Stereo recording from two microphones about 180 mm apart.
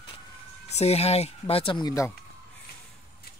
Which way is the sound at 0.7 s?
35° left (ahead or behind).